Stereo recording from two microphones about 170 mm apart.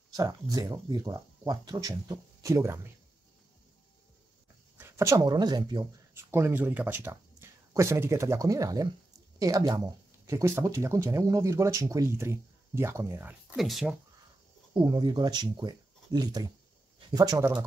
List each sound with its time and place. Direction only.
0.1 s speech: 20° right (ahead or behind)
4.7 s speech: 15° right (ahead or behind)
6.1 s speech: 15° right (ahead or behind)
14.7 s speech: 30° right (ahead or behind)